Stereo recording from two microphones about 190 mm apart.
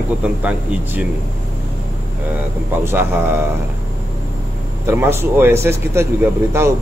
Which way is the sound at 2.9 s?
10° right (ahead or behind).